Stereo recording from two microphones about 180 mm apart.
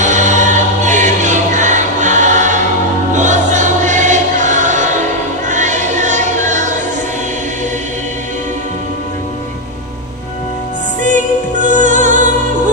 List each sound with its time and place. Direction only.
0.0 s choir: 45° right (ahead or behind)
11.7 s music: 45° right (ahead or behind)